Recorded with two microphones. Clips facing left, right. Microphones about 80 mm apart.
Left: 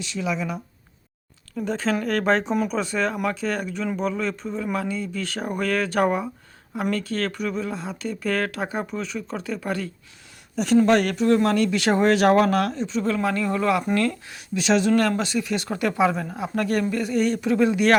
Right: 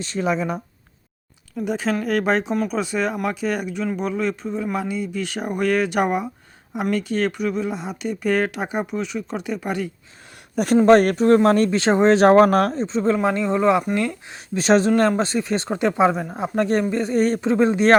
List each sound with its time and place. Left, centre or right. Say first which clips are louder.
0.0 s speech: right 4 dB; right
1.5 s speech: right 1 dB; centre
10.5 s speech: right 2 dB; right
10.8 s speech: right 5 dB; right; by 14.3 s centre
14.3 s speech: right 5 dB; right